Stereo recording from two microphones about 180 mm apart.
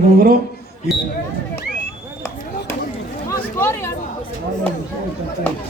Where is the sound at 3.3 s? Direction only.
15° left (ahead or behind).